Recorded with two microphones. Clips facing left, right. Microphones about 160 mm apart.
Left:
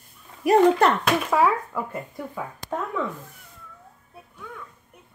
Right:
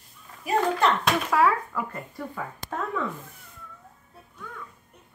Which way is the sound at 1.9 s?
5° left (ahead or behind).